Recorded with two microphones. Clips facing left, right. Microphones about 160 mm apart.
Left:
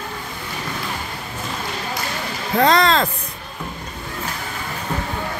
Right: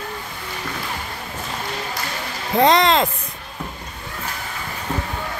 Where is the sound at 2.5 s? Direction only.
20° right (ahead or behind).